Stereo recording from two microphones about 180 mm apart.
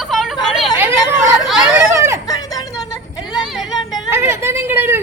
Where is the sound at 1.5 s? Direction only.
5° right (ahead or behind).